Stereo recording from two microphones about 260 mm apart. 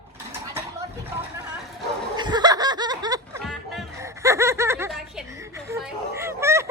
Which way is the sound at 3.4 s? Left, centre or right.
Centre.